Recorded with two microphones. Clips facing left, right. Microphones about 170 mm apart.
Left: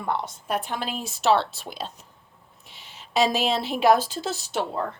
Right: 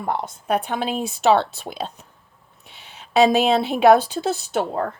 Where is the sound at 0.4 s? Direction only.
60° right (ahead or behind).